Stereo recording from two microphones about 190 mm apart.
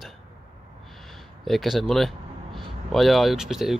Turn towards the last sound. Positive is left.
turn(degrees=0)  # may be behind; listen again after turning